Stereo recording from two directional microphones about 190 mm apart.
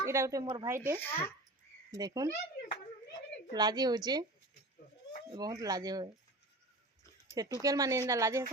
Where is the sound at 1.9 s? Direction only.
20° right (ahead or behind).